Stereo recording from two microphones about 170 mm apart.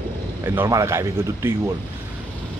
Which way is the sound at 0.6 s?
15° right (ahead or behind).